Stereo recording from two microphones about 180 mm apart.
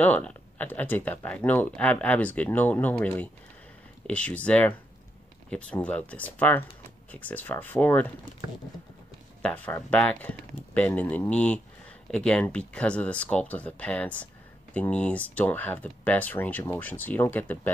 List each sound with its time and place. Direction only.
0.0 s speech: 10° left (ahead or behind)
9.4 s speech: 10° left (ahead or behind)